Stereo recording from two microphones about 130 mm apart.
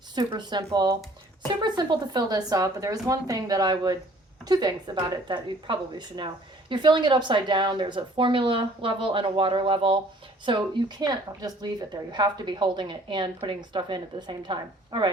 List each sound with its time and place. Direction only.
0.2 s a woman's voice: 35° right (ahead or behind)